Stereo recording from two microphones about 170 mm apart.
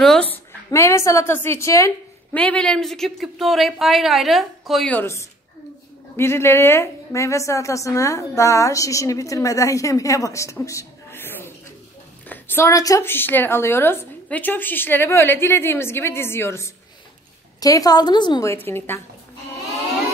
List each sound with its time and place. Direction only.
0.0 s a woman's voice: 5° left (ahead or behind)
2.3 s a woman's voice: 5° left (ahead or behind)